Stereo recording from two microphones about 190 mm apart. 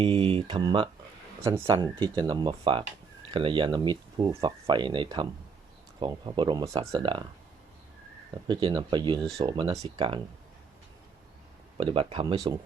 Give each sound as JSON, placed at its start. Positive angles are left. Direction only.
{"t": 0.0, "sound": "speech", "side_deg": -30}
{"t": 8.4, "sound": "speech", "side_deg": -25}
{"t": 11.8, "sound": "speech", "side_deg": -30}